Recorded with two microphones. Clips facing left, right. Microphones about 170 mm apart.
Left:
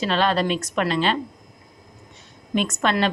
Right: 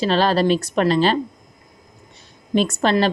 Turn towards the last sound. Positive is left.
turn(degrees=-30)  # may be behind; listen again after turning